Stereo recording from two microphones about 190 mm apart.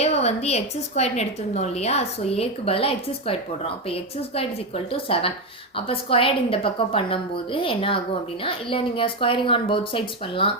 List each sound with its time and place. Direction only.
0.0 s a woman's voice: 35° left (ahead or behind)